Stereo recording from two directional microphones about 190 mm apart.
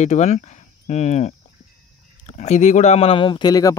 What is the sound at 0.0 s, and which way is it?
Speech, 35° left (ahead or behind).